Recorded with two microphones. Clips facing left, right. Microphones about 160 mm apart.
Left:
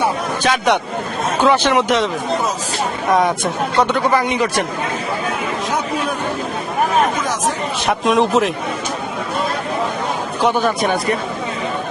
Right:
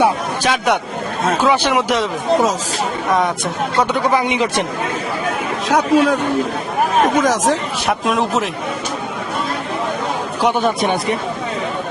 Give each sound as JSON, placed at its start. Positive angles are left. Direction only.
{"t": 0.4, "sound": "speech", "side_deg": -5}
{"t": 3.1, "sound": "speech", "side_deg": 0}
{"t": 3.9, "sound": "speech", "side_deg": -15}
{"t": 5.6, "sound": "a man's voice", "side_deg": -90}
{"t": 7.2, "sound": "a man's voice", "side_deg": -90}
{"t": 7.9, "sound": "speech", "side_deg": 0}